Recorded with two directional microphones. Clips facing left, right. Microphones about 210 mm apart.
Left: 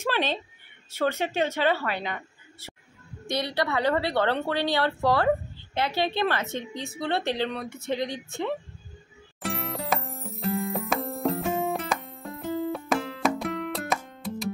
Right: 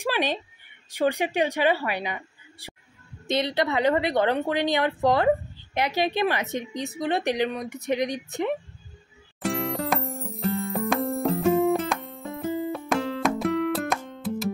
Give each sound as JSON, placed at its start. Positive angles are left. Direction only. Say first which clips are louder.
{"t": 0.0, "sound": "a woman's voice", "louder": "right 1 dB", "side_deg": -15}
{"t": 9.4, "sound": "music", "louder": "right 5 dB", "side_deg": 0}